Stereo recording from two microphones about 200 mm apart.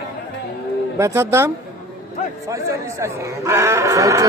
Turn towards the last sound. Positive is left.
turn(degrees=-15)  # may be behind; listen again after turning